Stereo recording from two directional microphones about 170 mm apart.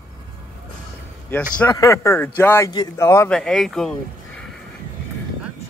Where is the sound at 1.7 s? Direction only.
20° left (ahead or behind).